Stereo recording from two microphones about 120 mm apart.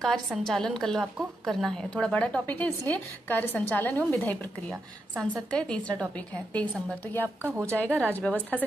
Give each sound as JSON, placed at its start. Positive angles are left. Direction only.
{"t": 0.0, "sound": "a woman's voice", "side_deg": 0}
{"t": 7.4, "sound": "a woman's voice", "side_deg": -20}
{"t": 8.0, "sound": "a woman's voice", "side_deg": 10}